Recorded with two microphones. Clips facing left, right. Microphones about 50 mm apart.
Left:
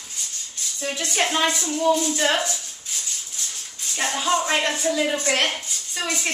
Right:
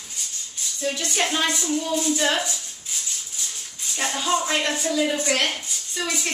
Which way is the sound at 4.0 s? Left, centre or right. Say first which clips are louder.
Left 2 dB; centre.